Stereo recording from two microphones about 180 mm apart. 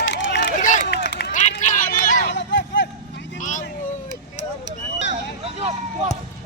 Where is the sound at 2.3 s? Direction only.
80° left.